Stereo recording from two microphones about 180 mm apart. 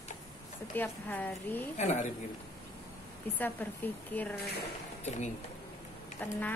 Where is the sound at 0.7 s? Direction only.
10° left (ahead or behind).